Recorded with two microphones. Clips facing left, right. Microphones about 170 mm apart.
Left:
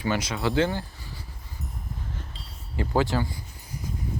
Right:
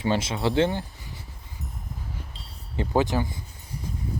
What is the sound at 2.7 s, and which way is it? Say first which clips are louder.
Speech: right 1 dB; 20° right (ahead or behind).